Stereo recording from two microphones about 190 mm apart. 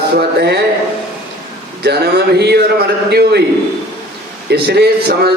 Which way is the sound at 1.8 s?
60° right (ahead or behind).